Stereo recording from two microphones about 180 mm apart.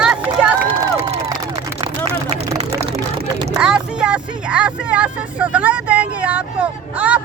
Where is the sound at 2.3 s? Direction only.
35° right (ahead or behind).